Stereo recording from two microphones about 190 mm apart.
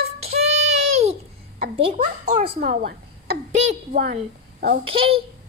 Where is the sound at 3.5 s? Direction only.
40° right (ahead or behind).